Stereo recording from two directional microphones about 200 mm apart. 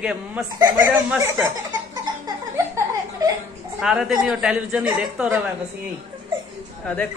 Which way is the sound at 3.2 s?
20° right (ahead or behind).